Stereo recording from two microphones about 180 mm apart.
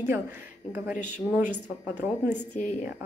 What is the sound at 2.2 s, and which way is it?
Speech, 40° left (ahead or behind).